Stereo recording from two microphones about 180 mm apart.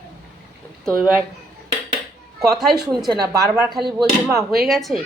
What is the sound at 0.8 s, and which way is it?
Speech, 5° left (ahead or behind).